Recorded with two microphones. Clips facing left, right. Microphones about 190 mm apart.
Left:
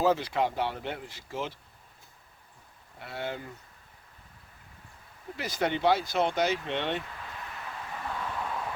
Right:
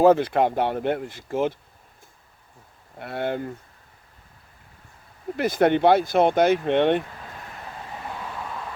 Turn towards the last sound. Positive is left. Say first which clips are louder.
# right 11 dB
turn(degrees=-55)  # may be behind; listen again after turning